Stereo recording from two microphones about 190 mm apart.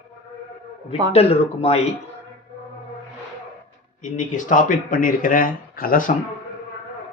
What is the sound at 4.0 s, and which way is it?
Speech, 40° left (ahead or behind).